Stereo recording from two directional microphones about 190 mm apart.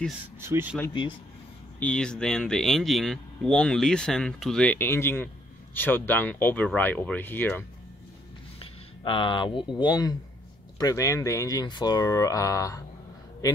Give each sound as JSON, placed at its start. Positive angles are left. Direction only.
{"t": 0.4, "sound": "speech", "side_deg": -10}
{"t": 1.8, "sound": "speech", "side_deg": 5}
{"t": 8.5, "sound": "speech", "side_deg": 25}